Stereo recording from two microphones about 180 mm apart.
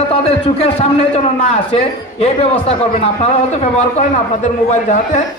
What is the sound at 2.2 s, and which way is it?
A man's voice, 35° left (ahead or behind).